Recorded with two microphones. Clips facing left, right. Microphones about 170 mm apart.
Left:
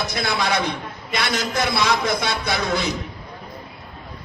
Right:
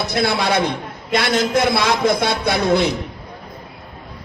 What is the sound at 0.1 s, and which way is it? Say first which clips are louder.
A man's voice: right 8 dB; 60° right (ahead or behind).